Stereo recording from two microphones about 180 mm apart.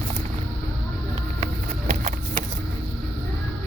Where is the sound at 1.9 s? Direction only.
45° right (ahead or behind).